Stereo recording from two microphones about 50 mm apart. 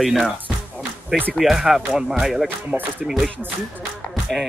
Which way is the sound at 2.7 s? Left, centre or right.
Right.